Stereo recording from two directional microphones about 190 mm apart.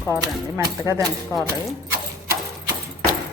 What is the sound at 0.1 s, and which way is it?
Speech, 15° right (ahead or behind).